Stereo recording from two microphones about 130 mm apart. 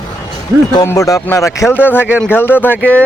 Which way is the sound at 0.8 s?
25° left (ahead or behind).